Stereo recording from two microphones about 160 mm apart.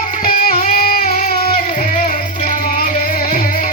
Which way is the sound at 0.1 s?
60° left (ahead or behind).